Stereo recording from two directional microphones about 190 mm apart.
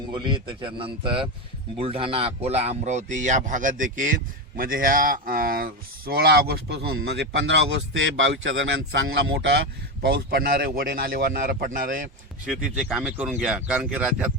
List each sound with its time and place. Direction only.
0.1 s a man's voice: 25° right (ahead or behind); by 9.6 s 70° right (ahead or behind)
10.0 s speech: 55° right (ahead or behind)
12.5 s speech: centre (ahead or behind)